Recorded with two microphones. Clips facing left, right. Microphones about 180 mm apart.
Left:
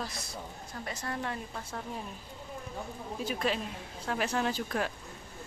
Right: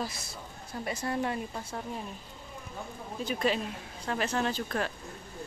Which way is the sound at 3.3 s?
Centre (ahead or behind).